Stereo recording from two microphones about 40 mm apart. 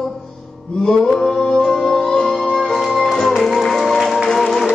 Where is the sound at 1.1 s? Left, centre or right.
Centre.